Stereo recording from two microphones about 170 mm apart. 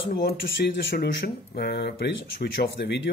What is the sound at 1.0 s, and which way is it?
Speech, 70° left (ahead or behind).